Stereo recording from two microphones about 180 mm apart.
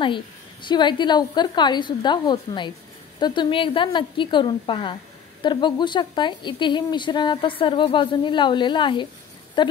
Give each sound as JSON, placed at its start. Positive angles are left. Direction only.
{"t": 0.0, "sound": "a woman's voice", "side_deg": 25}